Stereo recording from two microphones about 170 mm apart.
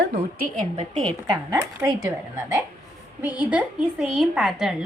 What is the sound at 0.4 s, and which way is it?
Speech, 50° right (ahead or behind).